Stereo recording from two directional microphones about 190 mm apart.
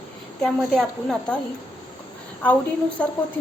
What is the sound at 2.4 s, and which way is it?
Speech, 10° left (ahead or behind).